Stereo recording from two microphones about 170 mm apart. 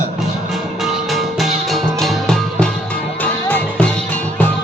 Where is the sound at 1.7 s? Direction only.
Centre (ahead or behind).